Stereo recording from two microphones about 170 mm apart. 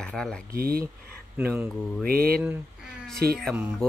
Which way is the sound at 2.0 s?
60° right (ahead or behind).